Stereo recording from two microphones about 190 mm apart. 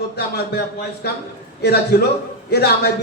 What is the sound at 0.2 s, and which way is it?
A man's voice, 55° left (ahead or behind).